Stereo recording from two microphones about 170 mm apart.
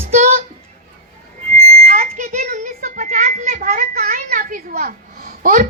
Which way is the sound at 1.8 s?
50° right (ahead or behind).